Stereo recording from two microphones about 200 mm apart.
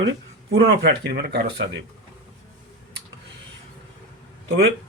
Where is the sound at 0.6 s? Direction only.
55° right (ahead or behind).